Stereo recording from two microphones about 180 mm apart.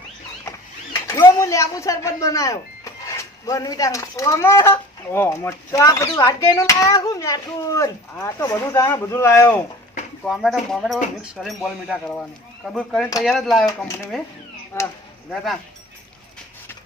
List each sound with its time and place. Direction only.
1.0 s speech: 15° left (ahead or behind)
10.2 s speech: centre (ahead or behind)
14.7 s speech: 15° left (ahead or behind)